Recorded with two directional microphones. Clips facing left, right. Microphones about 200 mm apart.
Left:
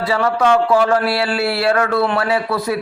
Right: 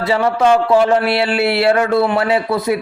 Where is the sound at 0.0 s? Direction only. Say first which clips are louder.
Right 2 dB; 25° right (ahead or behind).